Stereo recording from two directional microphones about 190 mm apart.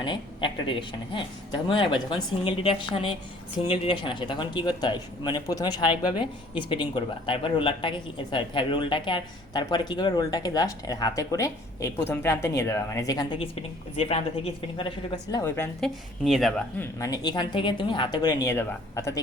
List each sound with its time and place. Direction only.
0.0 s a woman's voice: 25° left (ahead or behind); by 16.6 s centre (ahead or behind)
16.8 s speech: 20° left (ahead or behind)